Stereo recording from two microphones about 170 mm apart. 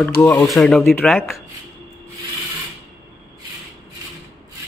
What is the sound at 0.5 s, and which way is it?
Speech, centre (ahead or behind).